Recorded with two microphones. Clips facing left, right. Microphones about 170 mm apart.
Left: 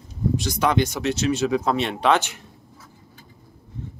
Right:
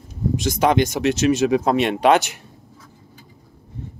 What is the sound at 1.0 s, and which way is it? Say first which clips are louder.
Speech: right 5 dB; 20° right (ahead or behind).